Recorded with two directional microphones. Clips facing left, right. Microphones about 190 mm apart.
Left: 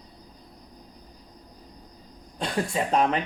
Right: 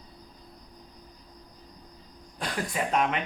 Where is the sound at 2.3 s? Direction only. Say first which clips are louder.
Left 4 dB; 25° left (ahead or behind).